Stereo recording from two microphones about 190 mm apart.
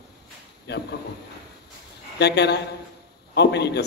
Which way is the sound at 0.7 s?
60° left (ahead or behind).